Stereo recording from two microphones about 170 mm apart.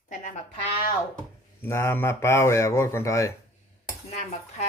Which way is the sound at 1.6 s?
15° left (ahead or behind).